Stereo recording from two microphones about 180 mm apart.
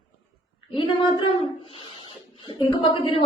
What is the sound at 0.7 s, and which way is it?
Speech, 30° left (ahead or behind).